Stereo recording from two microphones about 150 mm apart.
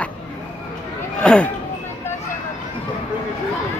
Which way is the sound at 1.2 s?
5° left (ahead or behind).